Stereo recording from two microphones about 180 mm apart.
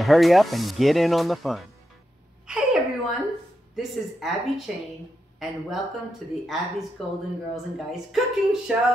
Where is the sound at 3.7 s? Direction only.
Centre (ahead or behind).